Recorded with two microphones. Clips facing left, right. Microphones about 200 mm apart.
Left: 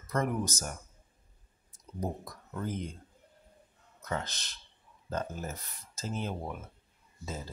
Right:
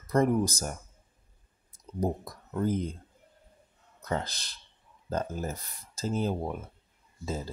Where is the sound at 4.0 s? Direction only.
35° right (ahead or behind).